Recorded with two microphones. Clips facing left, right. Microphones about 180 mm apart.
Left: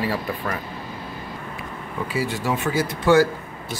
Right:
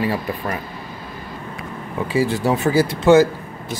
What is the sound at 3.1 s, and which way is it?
Speech, 20° right (ahead or behind).